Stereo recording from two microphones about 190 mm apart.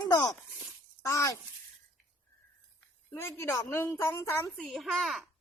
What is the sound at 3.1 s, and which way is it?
A child's voice, 15° left (ahead or behind).